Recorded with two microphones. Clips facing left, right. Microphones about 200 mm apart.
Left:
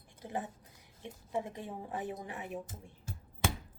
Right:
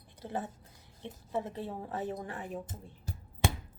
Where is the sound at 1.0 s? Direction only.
15° left (ahead or behind).